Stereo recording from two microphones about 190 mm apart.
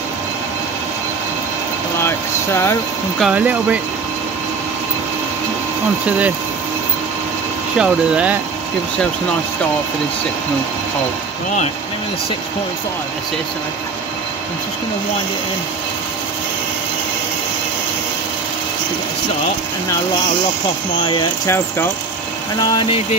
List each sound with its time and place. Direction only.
2.0 s vehicle: 10° left (ahead or behind)
3.2 s speech: 5° right (ahead or behind)
7.7 s speech: 5° right (ahead or behind)
21.0 s speech: 20° left (ahead or behind)